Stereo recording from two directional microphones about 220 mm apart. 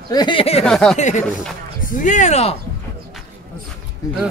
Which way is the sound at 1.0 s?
35° left (ahead or behind).